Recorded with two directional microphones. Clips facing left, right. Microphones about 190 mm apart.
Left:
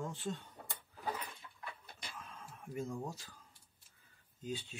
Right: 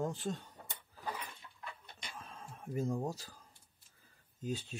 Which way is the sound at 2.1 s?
35° right (ahead or behind).